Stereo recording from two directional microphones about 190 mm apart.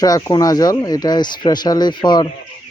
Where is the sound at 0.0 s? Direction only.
20° left (ahead or behind).